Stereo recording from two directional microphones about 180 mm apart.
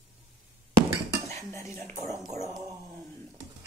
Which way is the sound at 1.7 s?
45° right (ahead or behind).